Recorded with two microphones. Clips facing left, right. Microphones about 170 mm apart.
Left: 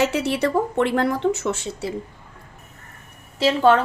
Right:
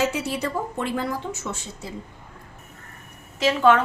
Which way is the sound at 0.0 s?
70° left (ahead or behind).